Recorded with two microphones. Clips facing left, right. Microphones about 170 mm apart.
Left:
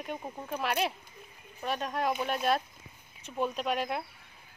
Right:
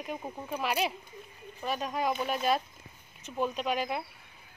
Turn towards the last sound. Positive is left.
turn(degrees=0)  # may be behind; listen again after turning